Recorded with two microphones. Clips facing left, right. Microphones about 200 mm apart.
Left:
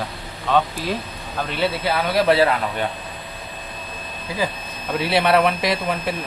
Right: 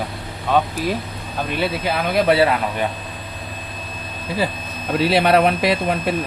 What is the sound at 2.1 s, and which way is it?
Speech, 10° right (ahead or behind).